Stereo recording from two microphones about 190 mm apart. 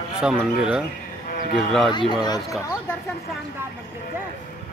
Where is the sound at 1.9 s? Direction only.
25° left (ahead or behind).